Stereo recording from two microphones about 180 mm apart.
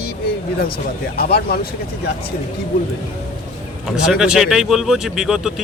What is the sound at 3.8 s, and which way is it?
Speech, centre (ahead or behind).